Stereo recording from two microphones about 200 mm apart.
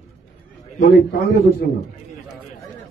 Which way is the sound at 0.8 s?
50° left (ahead or behind).